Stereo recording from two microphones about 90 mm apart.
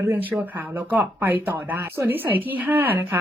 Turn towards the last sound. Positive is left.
turn(degrees=-20)  # may be behind; listen again after turning